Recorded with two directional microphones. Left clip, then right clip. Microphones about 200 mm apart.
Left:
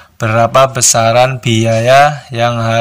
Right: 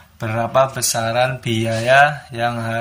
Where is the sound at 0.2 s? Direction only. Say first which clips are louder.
Left 8 dB; 45° left (ahead or behind).